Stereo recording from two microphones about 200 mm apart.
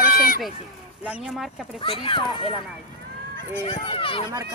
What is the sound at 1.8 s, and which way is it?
Speech, 25° left (ahead or behind).